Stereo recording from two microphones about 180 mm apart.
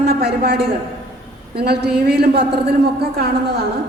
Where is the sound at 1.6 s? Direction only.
60° right (ahead or behind).